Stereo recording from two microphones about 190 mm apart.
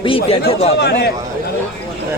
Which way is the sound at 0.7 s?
60° left (ahead or behind).